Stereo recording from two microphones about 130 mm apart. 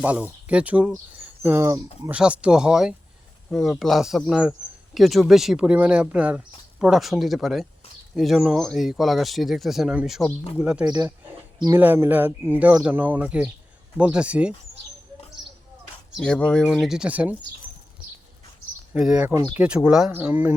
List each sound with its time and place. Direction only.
0.0 s speech: 10° right (ahead or behind)
1.4 s speech: 20° right (ahead or behind)
2.0 s speech: 10° right (ahead or behind)
10.8 s speech: 30° right (ahead or behind)
11.8 s speech: 15° right (ahead or behind)
16.2 s speech: 5° left (ahead or behind); by 17.3 s 10° right (ahead or behind)
18.9 s speech: 5° right (ahead or behind)
19.3 s speech: 35° right (ahead or behind)
19.5 s speech: 5° right (ahead or behind)